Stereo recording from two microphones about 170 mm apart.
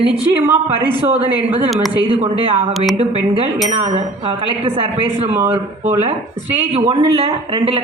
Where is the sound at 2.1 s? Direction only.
30° right (ahead or behind).